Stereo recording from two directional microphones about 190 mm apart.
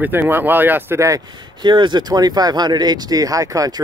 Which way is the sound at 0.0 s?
10° right (ahead or behind).